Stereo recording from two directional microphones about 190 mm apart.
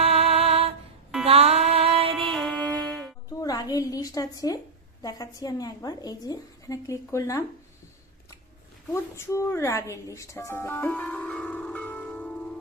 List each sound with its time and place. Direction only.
0.0 s music: 30° right (ahead or behind)
2.2 s music: 5° left (ahead or behind)
3.2 s a woman's voice: 20° left (ahead or behind)
8.9 s speech: 15° left (ahead or behind)